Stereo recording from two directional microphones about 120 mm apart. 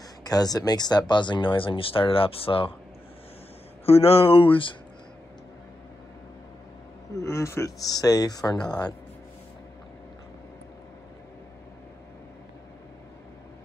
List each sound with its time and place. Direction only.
0.2 s speech: 30° left (ahead or behind); by 2.7 s 50° left (ahead or behind)
3.8 s speech: 55° left (ahead or behind)
7.2 s speech: 25° left (ahead or behind)